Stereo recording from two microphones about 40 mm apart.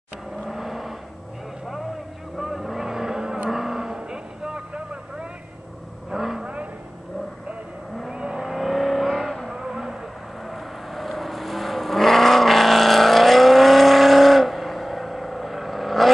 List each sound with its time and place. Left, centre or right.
0.4 s vehicle: centre
2.3 s vehicle: centre
3.4 s cattle: centre
6.0 s vehicle: centre
6.4 s vehicle: right
8.1 s vehicle: right
8.5 s vehicle: centre
9.5 s vehicle: centre